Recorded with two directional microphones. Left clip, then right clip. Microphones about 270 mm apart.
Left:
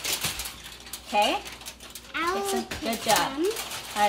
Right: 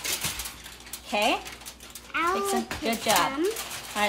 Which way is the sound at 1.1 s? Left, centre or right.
Centre.